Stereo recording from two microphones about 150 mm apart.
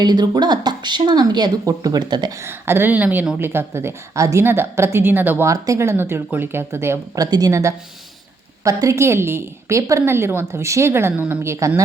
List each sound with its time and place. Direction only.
0.0 s speech: 25° right (ahead or behind)
2.4 s a woman's voice: 15° right (ahead or behind)